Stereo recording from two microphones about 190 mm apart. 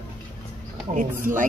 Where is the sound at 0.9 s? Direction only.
45° right (ahead or behind).